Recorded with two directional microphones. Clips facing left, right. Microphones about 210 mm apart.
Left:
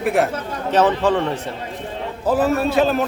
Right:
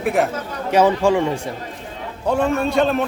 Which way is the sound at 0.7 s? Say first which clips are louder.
Right 2 dB; 10° right (ahead or behind).